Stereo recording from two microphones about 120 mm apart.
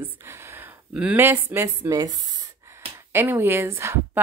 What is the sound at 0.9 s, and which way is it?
Speech, 10° right (ahead or behind).